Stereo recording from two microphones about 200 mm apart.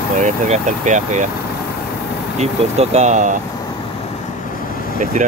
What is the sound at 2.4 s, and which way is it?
Speech, 35° right (ahead or behind).